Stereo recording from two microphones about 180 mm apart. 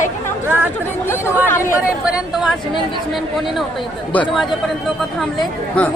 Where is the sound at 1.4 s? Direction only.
15° left (ahead or behind).